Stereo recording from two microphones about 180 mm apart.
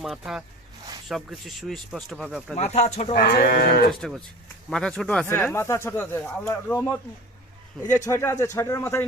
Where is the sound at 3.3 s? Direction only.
60° left (ahead or behind).